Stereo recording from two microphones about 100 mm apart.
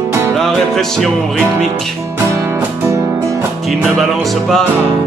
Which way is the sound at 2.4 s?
25° right (ahead or behind).